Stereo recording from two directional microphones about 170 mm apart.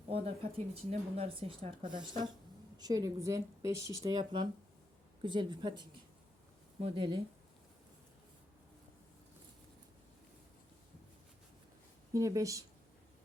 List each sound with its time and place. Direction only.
0.1 s speech: 35° right (ahead or behind)
12.1 s speech: 20° right (ahead or behind)